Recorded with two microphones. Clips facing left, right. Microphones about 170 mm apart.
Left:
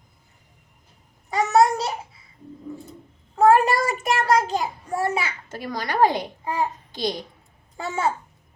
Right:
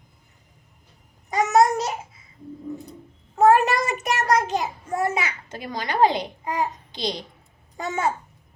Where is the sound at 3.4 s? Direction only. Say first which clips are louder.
Even; 20° right (ahead or behind).